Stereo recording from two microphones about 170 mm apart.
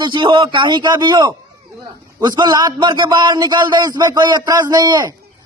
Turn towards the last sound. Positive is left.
turn(degrees=-25)  # may be behind; listen again after turning